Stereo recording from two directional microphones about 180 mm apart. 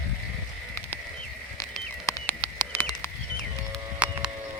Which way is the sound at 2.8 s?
15° left (ahead or behind).